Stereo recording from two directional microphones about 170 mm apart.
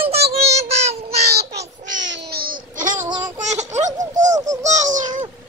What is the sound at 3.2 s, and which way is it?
Baby laughter, 45° right (ahead or behind).